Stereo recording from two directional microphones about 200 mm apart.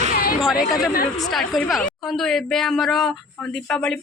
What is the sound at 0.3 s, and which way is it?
Chatter, centre (ahead or behind).